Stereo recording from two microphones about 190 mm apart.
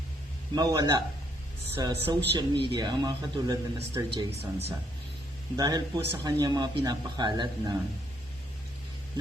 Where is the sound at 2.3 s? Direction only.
25° right (ahead or behind).